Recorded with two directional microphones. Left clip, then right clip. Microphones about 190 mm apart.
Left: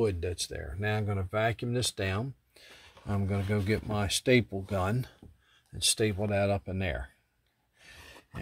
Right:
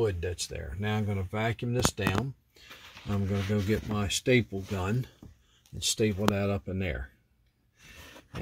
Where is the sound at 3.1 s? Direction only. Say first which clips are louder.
Right 1 dB; 25° left (ahead or behind).